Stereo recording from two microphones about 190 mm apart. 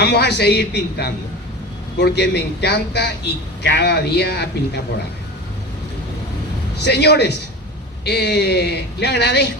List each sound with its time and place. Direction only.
0.0 s speech: 60° left (ahead or behind)
6.8 s speech: 60° left (ahead or behind)